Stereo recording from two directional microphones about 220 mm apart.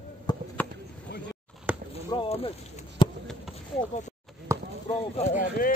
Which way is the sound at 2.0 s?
25° left (ahead or behind).